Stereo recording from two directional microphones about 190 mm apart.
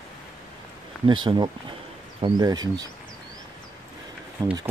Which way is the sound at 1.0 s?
25° right (ahead or behind).